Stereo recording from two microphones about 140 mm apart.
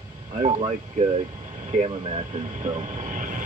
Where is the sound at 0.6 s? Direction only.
45° right (ahead or behind).